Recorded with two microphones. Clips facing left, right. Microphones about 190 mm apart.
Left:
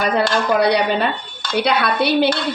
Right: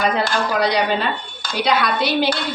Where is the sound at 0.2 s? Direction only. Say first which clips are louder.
Left 3 dB; 60° left (ahead or behind).